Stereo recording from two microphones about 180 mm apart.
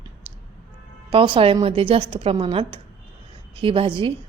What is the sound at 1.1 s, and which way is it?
A woman's voice, 30° right (ahead or behind).